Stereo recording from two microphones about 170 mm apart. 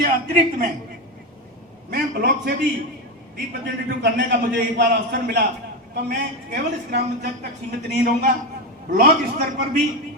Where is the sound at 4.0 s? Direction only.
90° right.